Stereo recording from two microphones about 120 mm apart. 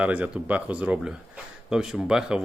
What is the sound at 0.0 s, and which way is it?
Speech, 10° right (ahead or behind).